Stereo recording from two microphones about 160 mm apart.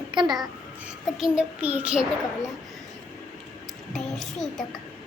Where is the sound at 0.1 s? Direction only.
25° right (ahead or behind).